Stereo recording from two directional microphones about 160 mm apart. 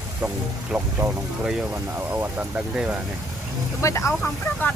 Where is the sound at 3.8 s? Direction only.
20° left (ahead or behind).